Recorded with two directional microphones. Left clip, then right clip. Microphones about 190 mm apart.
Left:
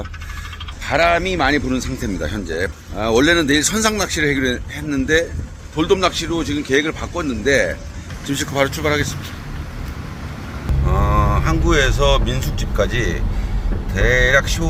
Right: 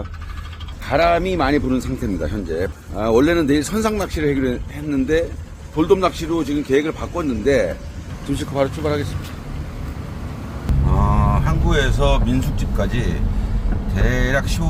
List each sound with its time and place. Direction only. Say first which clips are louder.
0.9 s speech: left 1 dB; 15° right (ahead or behind)
2.0 s speech: even; centre (ahead or behind)
5.7 s speech: even; 15° right (ahead or behind)
7.0 s speech: even; centre (ahead or behind)
7.3 s speech: left 1 dB; 10° right (ahead or behind)
8.3 s speech: left 2 dB; centre (ahead or behind)
10.9 s speech: left 2 dB; centre (ahead or behind)